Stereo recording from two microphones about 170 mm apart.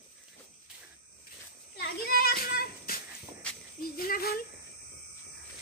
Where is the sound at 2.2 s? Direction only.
60° left (ahead or behind).